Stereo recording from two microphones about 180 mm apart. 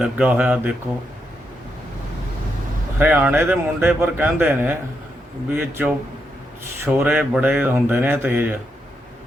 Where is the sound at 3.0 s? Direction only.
10° right (ahead or behind).